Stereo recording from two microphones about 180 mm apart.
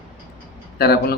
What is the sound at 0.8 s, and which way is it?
Speech, 60° left (ahead or behind).